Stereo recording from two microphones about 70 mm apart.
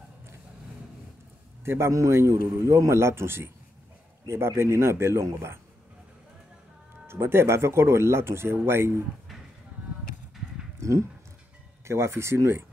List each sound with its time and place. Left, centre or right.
1.6 s a man's voice: right
7.1 s a man's voice: right
10.8 s a sound: right
11.8 s a man's voice: right